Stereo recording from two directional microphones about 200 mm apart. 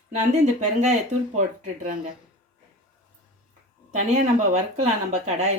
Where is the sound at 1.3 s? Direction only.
40° right (ahead or behind).